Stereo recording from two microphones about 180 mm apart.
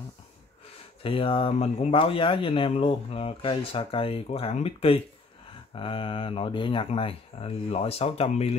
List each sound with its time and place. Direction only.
1.0 s speech: 30° left (ahead or behind)